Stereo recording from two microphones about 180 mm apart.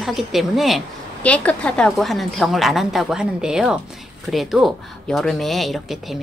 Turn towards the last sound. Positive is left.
turn(degrees=0)  # may be behind; listen again after turning